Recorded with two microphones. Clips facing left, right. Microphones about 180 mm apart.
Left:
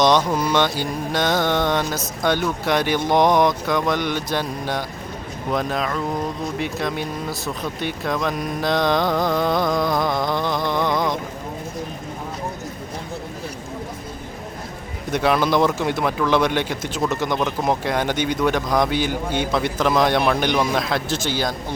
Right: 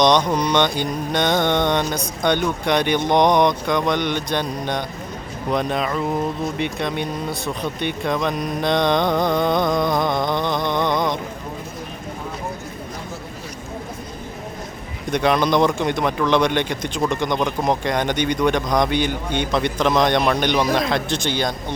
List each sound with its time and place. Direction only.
0.0 s speech: 5° left (ahead or behind)
10.2 s a sound: 20° right (ahead or behind)
10.6 s mantra: 20° right (ahead or behind)
15.1 s speech: 5° left (ahead or behind)